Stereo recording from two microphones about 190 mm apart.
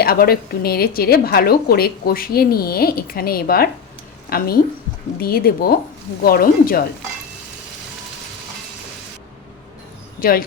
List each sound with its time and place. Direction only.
0.0 s a woman's voice: 55° left (ahead or behind)
10.2 s speech: 50° left (ahead or behind)